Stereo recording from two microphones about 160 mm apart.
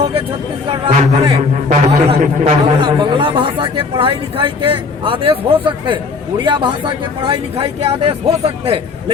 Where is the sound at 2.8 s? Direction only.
30° right (ahead or behind).